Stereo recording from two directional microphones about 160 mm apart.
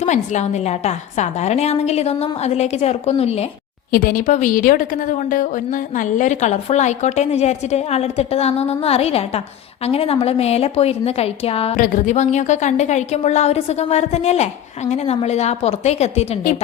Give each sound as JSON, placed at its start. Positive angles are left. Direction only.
{"t": 0.0, "sound": "a woman's voice", "side_deg": 45}
{"t": 3.9, "sound": "a woman's voice", "side_deg": 60}
{"t": 11.8, "sound": "a woman's voice", "side_deg": 50}